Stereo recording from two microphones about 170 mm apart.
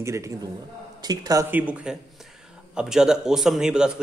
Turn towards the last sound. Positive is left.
turn(degrees=-5)  # may be behind; listen again after turning